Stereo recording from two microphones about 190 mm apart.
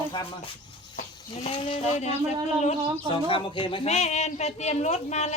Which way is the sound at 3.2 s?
25° left (ahead or behind).